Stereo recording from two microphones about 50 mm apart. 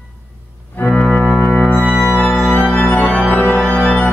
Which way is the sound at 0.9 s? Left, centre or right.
Left.